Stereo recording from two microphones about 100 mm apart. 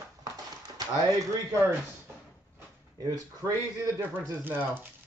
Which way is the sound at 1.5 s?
25° right (ahead or behind).